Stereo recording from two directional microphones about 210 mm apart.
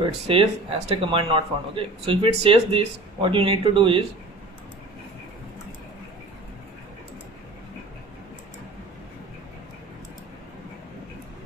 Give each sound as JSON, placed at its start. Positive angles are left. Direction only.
{"t": 0.0, "sound": "speech", "side_deg": -25}